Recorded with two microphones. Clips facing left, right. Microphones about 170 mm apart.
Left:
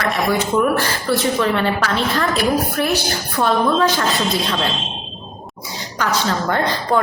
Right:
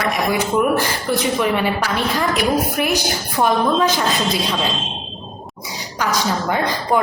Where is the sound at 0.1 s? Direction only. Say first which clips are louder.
Left 2 dB; 15° right (ahead or behind).